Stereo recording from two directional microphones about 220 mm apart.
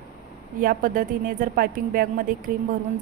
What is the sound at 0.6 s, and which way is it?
A woman's voice, 40° right (ahead or behind).